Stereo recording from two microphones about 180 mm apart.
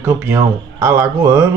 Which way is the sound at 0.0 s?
15° right (ahead or behind).